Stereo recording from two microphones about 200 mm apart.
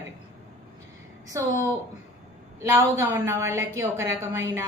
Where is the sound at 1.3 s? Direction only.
15° right (ahead or behind).